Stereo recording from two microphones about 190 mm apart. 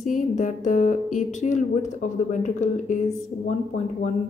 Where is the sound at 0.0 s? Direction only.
45° left (ahead or behind).